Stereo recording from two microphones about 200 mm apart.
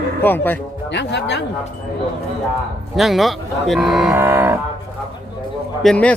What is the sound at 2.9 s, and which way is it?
Speech, centre (ahead or behind).